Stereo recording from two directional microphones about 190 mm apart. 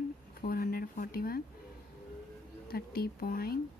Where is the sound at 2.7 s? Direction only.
50° left (ahead or behind).